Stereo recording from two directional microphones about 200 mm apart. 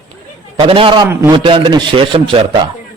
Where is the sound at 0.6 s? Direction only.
25° right (ahead or behind).